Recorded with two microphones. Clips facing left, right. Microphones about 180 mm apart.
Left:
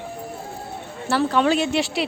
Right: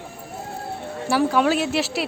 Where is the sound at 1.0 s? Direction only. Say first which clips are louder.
Even; 10° right (ahead or behind).